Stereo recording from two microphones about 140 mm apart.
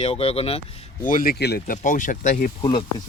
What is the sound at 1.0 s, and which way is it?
Speech, 85° left.